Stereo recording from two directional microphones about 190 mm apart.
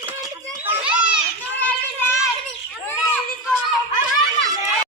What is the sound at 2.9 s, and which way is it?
Children playing, 10° left (ahead or behind).